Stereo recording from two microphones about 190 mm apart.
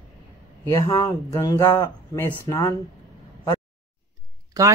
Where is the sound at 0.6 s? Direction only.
15° left (ahead or behind).